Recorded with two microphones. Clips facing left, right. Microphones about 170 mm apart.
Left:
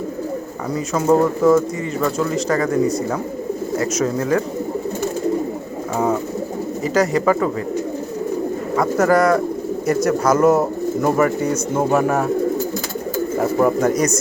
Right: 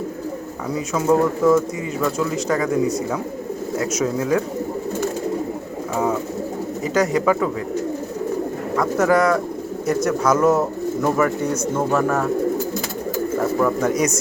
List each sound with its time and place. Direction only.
0.7 s speech: centre (ahead or behind)
6.8 s speech: centre (ahead or behind)
8.7 s speech: 5° left (ahead or behind)
10.5 s speech: 15° left (ahead or behind)
13.4 s speech: 20° left (ahead or behind)
13.8 s speech: centre (ahead or behind)